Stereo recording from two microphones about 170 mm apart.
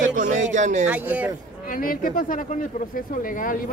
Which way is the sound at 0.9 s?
10° right (ahead or behind).